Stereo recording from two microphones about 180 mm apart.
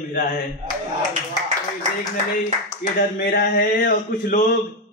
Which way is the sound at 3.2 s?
55° left (ahead or behind).